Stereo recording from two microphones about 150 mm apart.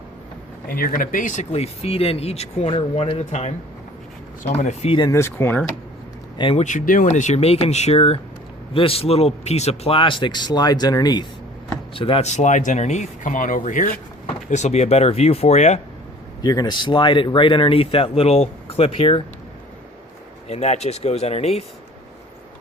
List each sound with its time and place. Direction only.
0.7 s speech: 70° left (ahead or behind); by 4.9 s 50° left (ahead or behind)
4.9 s speech: 20° left (ahead or behind)
6.3 s speech: 35° left (ahead or behind)
6.7 s speech: 60° left (ahead or behind); by 11.3 s 25° left (ahead or behind)
11.9 s speech: 35° left (ahead or behind); by 13.9 s 60° left (ahead or behind)
14.5 s speech: 50° left (ahead or behind)
16.4 s speech: 25° left (ahead or behind)
20.5 s speech: 45° left (ahead or behind)